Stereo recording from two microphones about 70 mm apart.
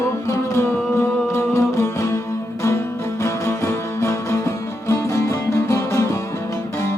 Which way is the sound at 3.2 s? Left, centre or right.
Left.